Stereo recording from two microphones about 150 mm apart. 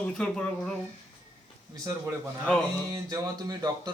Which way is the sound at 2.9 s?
25° right (ahead or behind).